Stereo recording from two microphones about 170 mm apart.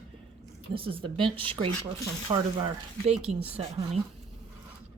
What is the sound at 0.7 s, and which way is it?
Speech, 30° right (ahead or behind).